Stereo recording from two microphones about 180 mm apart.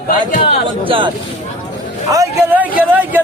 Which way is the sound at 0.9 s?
30° right (ahead or behind).